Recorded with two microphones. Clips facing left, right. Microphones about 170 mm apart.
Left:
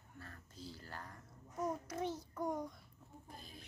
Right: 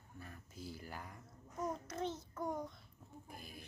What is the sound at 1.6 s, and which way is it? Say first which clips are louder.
Child singing: left 1 dB; 10° left (ahead or behind).